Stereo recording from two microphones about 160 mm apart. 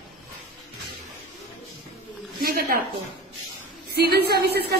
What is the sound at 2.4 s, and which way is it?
Speech, 65° right (ahead or behind).